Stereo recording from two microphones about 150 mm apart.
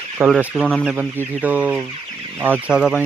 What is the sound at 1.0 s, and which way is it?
Speech, 10° right (ahead or behind).